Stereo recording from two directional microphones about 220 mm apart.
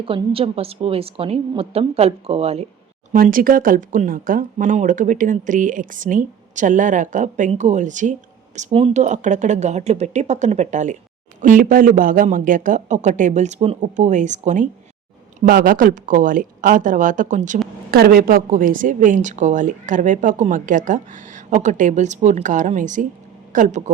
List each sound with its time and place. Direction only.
0.0 s a woman's voice: 25° right (ahead or behind)
3.1 s speech: 40° right (ahead or behind)